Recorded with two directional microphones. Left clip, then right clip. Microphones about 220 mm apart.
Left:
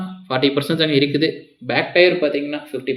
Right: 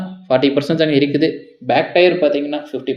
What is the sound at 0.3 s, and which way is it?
Speech, 15° right (ahead or behind).